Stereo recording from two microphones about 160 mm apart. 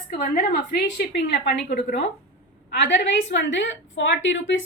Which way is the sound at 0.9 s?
90° left.